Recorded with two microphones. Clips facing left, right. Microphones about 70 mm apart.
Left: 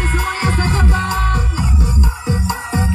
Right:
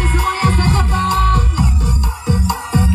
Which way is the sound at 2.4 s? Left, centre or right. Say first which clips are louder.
Right 3 dB; left.